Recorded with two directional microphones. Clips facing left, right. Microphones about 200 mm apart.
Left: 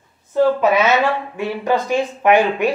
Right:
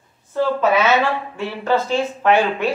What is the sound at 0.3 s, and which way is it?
A woman's voice, 15° left (ahead or behind).